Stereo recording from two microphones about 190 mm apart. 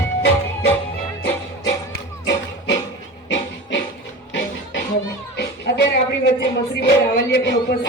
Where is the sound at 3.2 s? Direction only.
75° left (ahead or behind).